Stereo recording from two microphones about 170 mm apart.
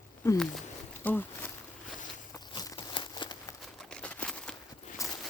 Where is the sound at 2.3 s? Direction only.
20° left (ahead or behind).